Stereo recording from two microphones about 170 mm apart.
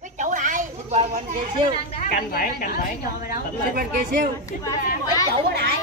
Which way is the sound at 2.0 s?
55° left (ahead or behind).